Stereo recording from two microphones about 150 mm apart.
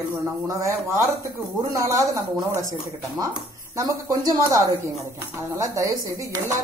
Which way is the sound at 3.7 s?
25° right (ahead or behind).